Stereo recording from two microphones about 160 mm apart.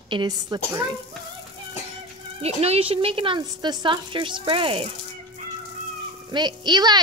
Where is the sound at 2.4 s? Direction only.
40° right (ahead or behind).